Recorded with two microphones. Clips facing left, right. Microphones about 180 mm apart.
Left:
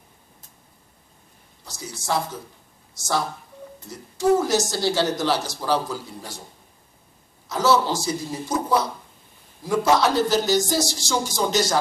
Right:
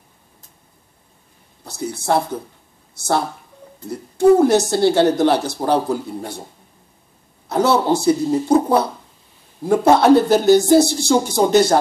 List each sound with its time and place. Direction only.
1.6 s a woman's voice: 60° right (ahead or behind)
7.4 s a woman's voice: 60° right (ahead or behind)